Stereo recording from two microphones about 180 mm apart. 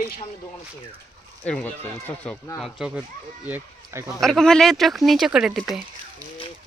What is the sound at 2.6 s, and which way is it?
Speech, centre (ahead or behind).